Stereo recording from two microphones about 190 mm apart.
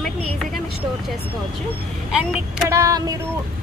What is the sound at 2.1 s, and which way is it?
Speech, 5° right (ahead or behind).